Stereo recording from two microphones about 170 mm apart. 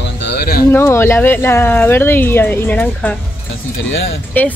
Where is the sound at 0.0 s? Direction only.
85° left; by 0.7 s 65° left (ahead or behind).